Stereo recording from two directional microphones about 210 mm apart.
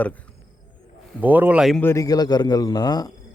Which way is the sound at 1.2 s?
10° right (ahead or behind).